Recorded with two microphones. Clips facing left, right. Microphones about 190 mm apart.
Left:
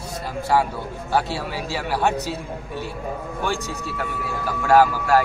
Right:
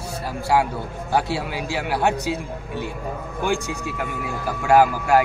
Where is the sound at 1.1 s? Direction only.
15° right (ahead or behind).